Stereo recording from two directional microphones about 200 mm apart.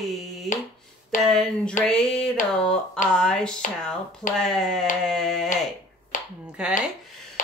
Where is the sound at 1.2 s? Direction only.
Centre (ahead or behind).